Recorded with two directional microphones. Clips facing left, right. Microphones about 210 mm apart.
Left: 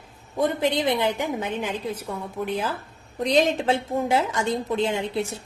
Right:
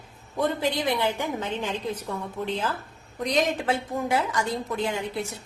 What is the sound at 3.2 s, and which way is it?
A woman's voice, 30° left (ahead or behind).